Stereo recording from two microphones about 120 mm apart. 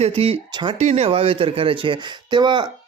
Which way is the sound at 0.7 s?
60° right (ahead or behind).